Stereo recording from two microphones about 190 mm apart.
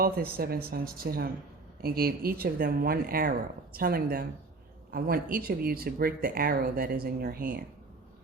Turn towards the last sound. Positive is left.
turn(degrees=-50)  # may be behind; listen again after turning